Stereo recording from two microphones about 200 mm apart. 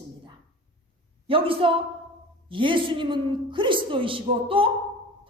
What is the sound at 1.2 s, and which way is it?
A woman's voice, 25° right (ahead or behind).